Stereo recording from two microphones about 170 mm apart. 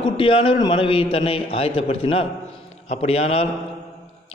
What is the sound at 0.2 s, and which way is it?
A man's voice, 30° left (ahead or behind).